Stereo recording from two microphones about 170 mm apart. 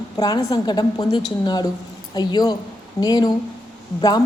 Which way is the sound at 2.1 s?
25° left (ahead or behind).